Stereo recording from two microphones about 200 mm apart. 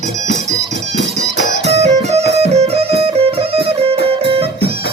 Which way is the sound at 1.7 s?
30° right (ahead or behind).